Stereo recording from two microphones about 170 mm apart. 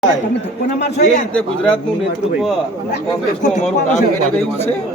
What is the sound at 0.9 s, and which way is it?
Speech, 45° left (ahead or behind).